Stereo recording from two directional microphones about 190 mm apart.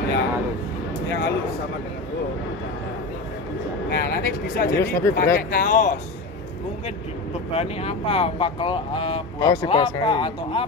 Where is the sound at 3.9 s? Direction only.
55° left (ahead or behind).